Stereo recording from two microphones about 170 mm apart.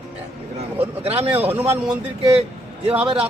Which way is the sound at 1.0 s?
35° right (ahead or behind).